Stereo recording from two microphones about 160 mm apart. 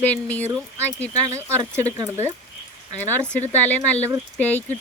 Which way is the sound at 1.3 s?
15° right (ahead or behind).